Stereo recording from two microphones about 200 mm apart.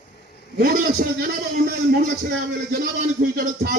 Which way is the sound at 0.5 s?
50° right (ahead or behind).